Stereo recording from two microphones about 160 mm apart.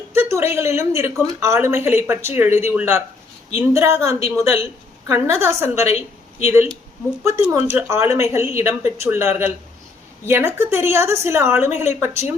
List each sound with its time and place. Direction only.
0.1 s speech: 15° right (ahead or behind)
7.3 s speech: 20° right (ahead or behind)